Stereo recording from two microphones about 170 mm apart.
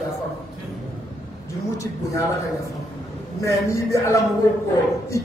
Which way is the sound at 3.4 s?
20° left (ahead or behind).